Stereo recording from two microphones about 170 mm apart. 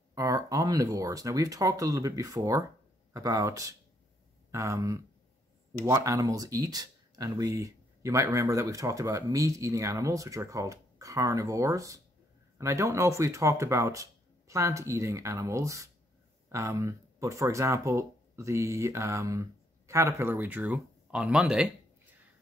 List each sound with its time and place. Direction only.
0.1 s speech: 20° right (ahead or behind); by 21.6 s 5° right (ahead or behind)